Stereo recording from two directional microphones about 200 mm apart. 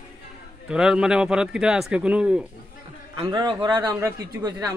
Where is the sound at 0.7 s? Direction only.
5° right (ahead or behind).